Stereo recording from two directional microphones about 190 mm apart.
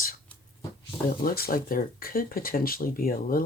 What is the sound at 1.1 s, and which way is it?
Speech, 50° left (ahead or behind).